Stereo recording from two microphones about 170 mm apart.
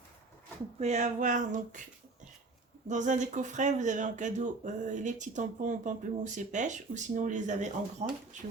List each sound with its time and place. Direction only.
0.8 s speech: 45° right (ahead or behind)
2.9 s speech: 45° right (ahead or behind)